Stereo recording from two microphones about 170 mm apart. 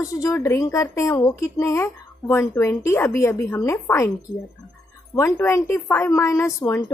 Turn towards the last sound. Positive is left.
turn(degrees=15)  # may be behind; listen again after turning